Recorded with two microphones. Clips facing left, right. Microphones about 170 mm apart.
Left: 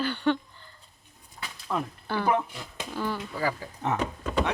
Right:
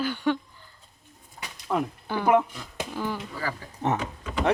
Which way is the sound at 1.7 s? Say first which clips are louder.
Right 3 dB; 15° right (ahead or behind).